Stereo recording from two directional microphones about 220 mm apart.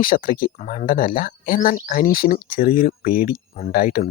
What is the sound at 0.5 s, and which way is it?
Speech, 30° left (ahead or behind).